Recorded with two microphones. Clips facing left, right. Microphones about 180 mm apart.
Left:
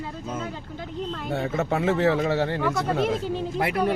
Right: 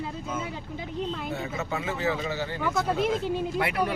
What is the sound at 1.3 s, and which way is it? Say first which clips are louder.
Speech: left 6 dB; 60° left (ahead or behind).